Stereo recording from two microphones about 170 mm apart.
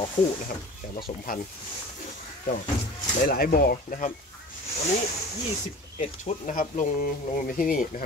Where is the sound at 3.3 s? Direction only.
60° left (ahead or behind).